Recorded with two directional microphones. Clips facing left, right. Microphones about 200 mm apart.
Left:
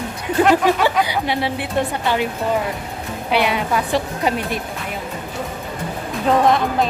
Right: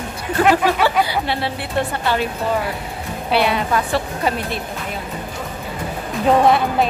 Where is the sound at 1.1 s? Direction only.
15° left (ahead or behind).